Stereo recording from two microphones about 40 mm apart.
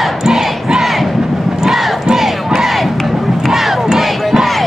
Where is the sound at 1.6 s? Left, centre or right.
Centre.